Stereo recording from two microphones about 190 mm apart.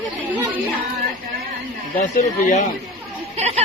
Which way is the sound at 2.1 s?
35° left (ahead or behind).